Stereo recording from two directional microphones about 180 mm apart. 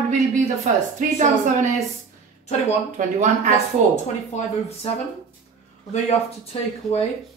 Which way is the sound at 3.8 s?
45° right (ahead or behind).